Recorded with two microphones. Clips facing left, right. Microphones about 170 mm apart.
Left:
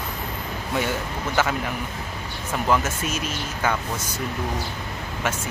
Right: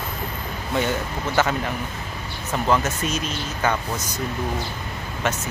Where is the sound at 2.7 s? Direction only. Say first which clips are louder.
Right 1 dB; 10° left (ahead or behind).